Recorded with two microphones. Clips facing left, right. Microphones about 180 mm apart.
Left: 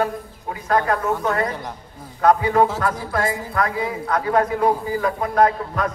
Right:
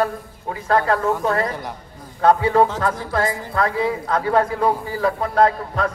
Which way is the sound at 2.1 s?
30° right (ahead or behind).